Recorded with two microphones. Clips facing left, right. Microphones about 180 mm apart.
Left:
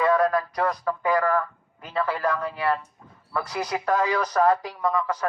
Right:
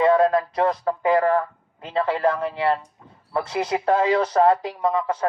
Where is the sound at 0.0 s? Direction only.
25° right (ahead or behind).